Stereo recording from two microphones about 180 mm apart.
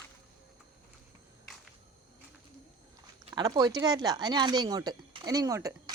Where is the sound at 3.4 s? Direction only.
20° right (ahead or behind).